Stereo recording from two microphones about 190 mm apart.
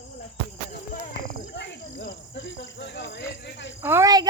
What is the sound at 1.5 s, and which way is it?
Cricket, 65° left (ahead or behind).